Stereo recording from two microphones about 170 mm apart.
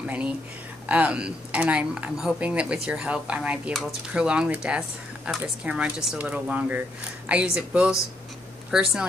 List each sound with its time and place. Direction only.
0.0 s speech: 10° right (ahead or behind)